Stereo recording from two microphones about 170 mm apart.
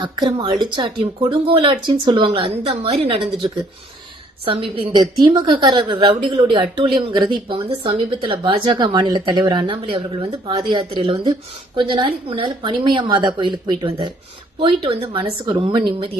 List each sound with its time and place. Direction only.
0.0 s a woman's voice: 25° right (ahead or behind)
4.4 s a woman's voice: 30° right (ahead or behind)